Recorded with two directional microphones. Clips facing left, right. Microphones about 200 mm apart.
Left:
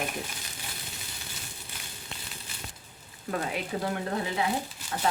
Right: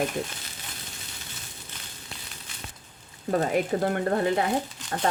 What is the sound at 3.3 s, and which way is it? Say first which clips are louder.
Speech: right 7 dB; 50° right (ahead or behind).